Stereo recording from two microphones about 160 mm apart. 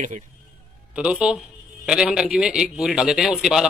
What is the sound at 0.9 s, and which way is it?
A man's voice, 5° right (ahead or behind).